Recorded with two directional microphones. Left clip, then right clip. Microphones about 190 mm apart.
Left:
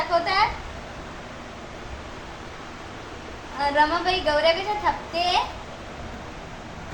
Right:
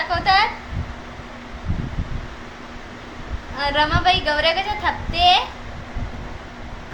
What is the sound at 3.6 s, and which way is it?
Speech, 40° right (ahead or behind).